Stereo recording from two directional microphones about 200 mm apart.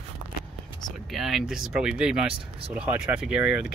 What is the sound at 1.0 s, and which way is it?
Speech, centre (ahead or behind).